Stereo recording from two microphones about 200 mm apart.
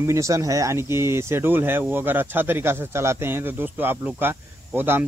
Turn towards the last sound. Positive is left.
turn(degrees=-10)  # may be behind; listen again after turning